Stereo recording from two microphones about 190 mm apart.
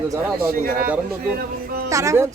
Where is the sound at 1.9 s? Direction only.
15° right (ahead or behind).